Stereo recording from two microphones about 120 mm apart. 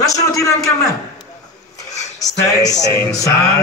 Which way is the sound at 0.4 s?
25° left (ahead or behind).